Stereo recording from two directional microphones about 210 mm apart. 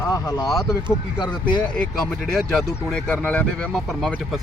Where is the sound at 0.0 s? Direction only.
15° left (ahead or behind).